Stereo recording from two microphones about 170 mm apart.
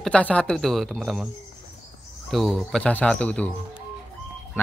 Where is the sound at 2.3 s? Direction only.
Centre (ahead or behind).